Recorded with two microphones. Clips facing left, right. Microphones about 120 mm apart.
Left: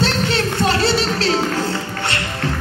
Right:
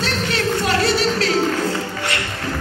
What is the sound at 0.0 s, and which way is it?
Music, 30° left (ahead or behind).